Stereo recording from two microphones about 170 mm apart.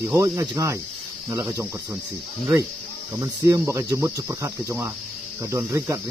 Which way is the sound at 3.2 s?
15° right (ahead or behind).